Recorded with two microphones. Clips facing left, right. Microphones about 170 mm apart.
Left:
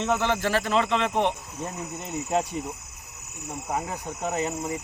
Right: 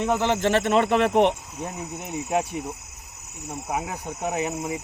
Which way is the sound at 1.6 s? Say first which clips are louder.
Right 1 dB; 10° right (ahead or behind).